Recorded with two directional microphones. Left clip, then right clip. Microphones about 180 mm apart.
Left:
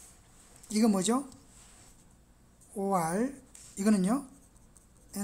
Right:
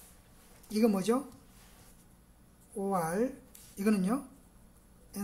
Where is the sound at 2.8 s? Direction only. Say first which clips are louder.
Left 2 dB; 25° left (ahead or behind).